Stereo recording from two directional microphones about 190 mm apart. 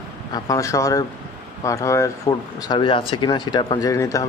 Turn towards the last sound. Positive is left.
turn(degrees=15)  # may be behind; listen again after turning